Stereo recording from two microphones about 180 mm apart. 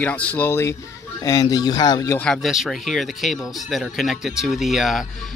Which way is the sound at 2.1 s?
5° left (ahead or behind).